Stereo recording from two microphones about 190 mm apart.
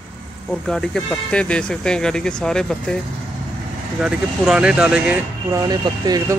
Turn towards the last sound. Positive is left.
turn(degrees=-20)  # may be behind; listen again after turning